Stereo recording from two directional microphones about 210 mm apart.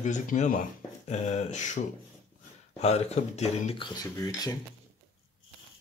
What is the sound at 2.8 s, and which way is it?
Speech, 30° left (ahead or behind).